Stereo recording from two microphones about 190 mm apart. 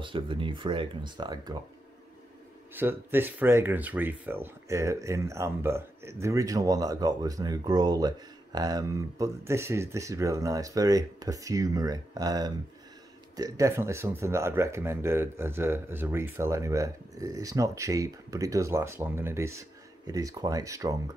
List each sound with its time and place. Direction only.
0.0 s speech: 25° right (ahead or behind)
2.7 s speech: 10° right (ahead or behind)